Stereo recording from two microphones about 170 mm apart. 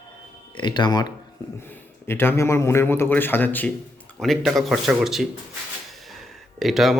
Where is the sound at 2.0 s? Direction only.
15° left (ahead or behind).